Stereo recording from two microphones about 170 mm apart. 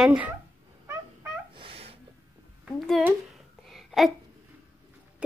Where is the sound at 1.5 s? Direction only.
30° right (ahead or behind).